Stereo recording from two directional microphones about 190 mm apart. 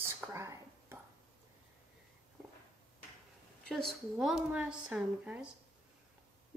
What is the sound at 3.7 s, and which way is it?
A woman's voice, centre (ahead or behind).